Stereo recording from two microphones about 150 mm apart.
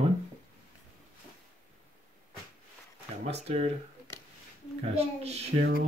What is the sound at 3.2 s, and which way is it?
Speech, 45° right (ahead or behind).